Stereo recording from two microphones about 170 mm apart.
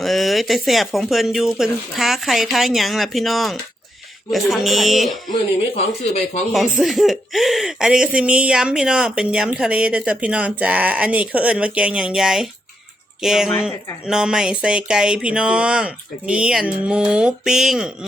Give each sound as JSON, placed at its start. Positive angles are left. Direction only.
{"t": 0.0, "sound": "speech", "side_deg": 0}
{"t": 5.3, "sound": "speech", "side_deg": 35}
{"t": 6.5, "sound": "speech", "side_deg": 0}